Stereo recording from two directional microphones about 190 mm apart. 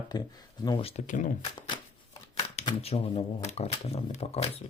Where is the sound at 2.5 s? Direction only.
30° left (ahead or behind).